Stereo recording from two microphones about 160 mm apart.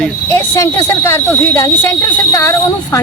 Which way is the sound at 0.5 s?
15° left (ahead or behind).